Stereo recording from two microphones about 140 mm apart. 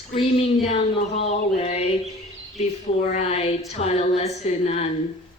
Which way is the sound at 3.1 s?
45° left (ahead or behind).